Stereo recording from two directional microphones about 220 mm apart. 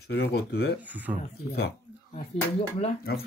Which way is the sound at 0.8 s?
5° right (ahead or behind).